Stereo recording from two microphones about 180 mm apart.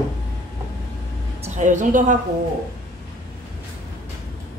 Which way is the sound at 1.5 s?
45° right (ahead or behind).